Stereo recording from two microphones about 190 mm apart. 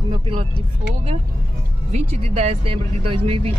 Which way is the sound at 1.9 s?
35° right (ahead or behind).